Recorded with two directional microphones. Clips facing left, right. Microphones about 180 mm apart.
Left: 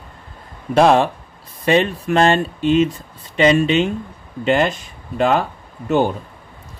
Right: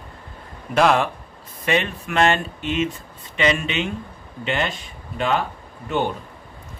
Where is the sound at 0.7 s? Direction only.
30° left (ahead or behind).